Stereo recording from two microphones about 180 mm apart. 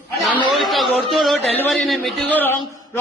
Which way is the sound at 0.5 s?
Centre (ahead or behind).